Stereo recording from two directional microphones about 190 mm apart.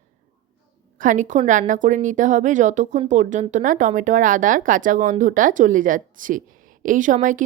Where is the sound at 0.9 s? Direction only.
40° right (ahead or behind).